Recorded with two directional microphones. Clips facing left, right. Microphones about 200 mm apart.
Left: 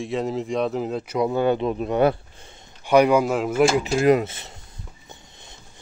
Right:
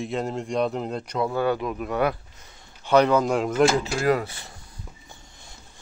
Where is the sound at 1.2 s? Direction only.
20° left (ahead or behind).